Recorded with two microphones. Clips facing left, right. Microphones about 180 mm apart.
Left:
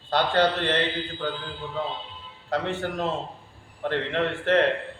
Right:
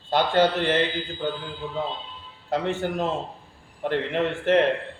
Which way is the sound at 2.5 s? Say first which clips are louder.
Right 2 dB; 15° right (ahead or behind).